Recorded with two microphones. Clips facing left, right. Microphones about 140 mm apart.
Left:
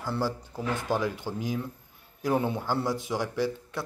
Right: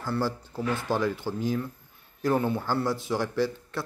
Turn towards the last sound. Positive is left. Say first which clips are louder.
# right 2 dB
turn(degrees=15)  # may be behind; listen again after turning